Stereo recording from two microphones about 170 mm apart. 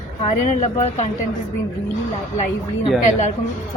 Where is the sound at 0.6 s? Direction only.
40° left (ahead or behind).